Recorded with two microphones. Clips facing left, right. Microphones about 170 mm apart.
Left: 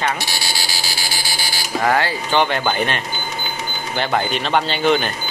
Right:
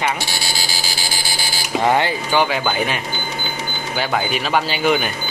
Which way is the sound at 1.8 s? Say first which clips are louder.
Right 1 dB; 20° right (ahead or behind).